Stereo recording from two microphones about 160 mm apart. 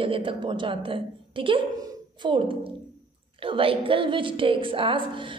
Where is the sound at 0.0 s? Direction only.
35° right (ahead or behind).